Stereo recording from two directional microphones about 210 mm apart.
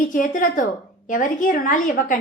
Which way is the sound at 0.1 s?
40° left (ahead or behind).